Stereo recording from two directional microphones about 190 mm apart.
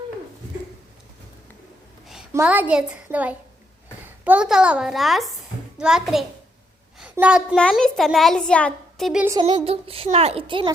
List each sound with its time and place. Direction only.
2.3 s a child's voice: 10° right (ahead or behind)
9.4 s a woman's voice: 30° right (ahead or behind)